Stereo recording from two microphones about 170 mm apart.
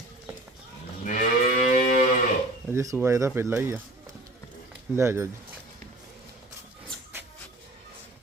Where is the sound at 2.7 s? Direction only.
15° right (ahead or behind).